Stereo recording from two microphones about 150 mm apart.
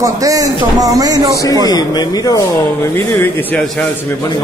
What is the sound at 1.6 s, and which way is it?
Speech, 25° left (ahead or behind).